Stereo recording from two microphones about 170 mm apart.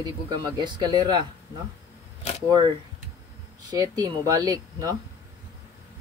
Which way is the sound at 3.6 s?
20° right (ahead or behind).